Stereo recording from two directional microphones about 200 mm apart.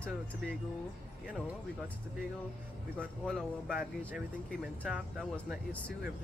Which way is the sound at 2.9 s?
Centre (ahead or behind).